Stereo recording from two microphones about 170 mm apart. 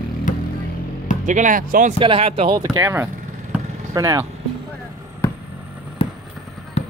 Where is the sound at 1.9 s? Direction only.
30° right (ahead or behind).